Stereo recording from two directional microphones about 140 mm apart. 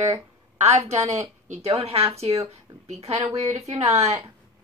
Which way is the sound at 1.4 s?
45° right (ahead or behind).